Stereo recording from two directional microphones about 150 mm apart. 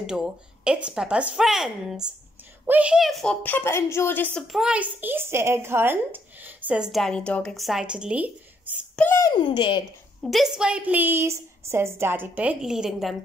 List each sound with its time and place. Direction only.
0.0 s speech: 5° right (ahead or behind)
3.4 s a woman's voice: 15° left (ahead or behind)
4.5 s a woman's voice: 5° right (ahead or behind)
8.9 s speech: 10° left (ahead or behind)
9.2 s a child's voice: 30° left (ahead or behind)
10.2 s a woman's voice: centre (ahead or behind)